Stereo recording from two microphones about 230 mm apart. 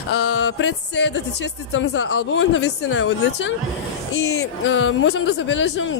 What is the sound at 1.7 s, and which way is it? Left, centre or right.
Speech, left.